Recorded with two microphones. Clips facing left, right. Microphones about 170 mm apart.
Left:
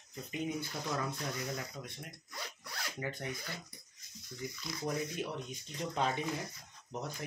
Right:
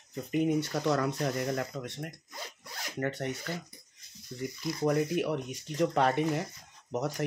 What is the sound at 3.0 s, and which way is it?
Speech, 70° right (ahead or behind).